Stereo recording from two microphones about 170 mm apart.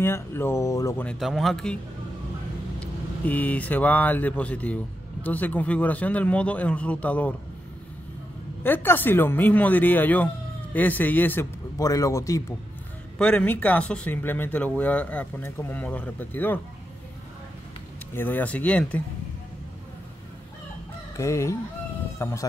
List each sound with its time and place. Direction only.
0.0 s speech: 15° left (ahead or behind)
1.0 s speech: centre (ahead or behind)
2.8 s speech: 10° left (ahead or behind)
8.6 s speech: 10° left (ahead or behind)
13.2 s speech: 10° left (ahead or behind)
18.1 s speech: 10° left (ahead or behind)
21.2 s speech: 15° left (ahead or behind)